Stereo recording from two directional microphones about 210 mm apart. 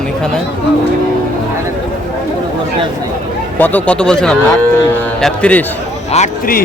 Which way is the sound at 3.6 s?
10° left (ahead or behind).